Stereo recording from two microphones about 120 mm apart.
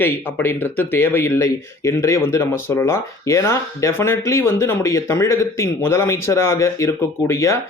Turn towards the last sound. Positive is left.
turn(degrees=25)  # may be behind; listen again after turning